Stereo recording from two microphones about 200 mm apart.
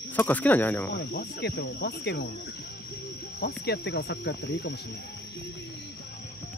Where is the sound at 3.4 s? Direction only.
55° left (ahead or behind).